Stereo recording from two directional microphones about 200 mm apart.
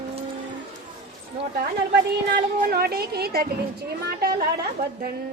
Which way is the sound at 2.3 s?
50° right (ahead or behind).